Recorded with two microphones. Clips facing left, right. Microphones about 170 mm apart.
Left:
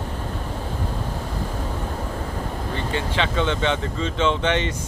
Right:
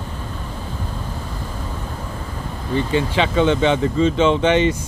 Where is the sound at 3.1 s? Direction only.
10° right (ahead or behind).